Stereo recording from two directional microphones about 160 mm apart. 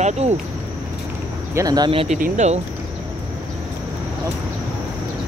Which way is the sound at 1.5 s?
25° right (ahead or behind).